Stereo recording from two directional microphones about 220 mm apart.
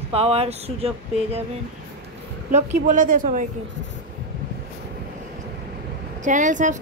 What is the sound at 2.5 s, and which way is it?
Speech, 35° right (ahead or behind).